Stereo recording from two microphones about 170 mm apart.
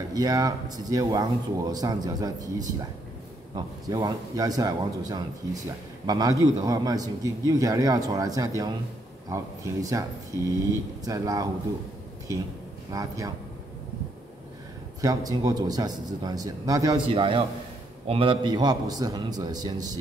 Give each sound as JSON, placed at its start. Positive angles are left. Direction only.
{"t": 0.1, "sound": "speech", "side_deg": -20}
{"t": 12.9, "sound": "speech", "side_deg": -20}
{"t": 15.0, "sound": "speech", "side_deg": -20}
{"t": 17.1, "sound": "a man's voice", "side_deg": -30}